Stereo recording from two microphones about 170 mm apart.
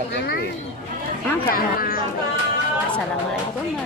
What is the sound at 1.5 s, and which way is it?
Speech, 60° left (ahead or behind).